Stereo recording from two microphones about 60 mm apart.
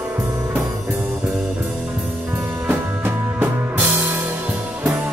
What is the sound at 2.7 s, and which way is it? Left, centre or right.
Music, right.